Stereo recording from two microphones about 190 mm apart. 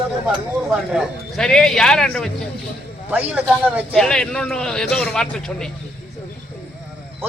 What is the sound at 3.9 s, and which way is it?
A man's voice, 5° left (ahead or behind).